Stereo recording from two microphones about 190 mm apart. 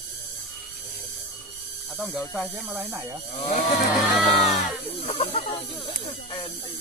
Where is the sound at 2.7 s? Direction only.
10° right (ahead or behind).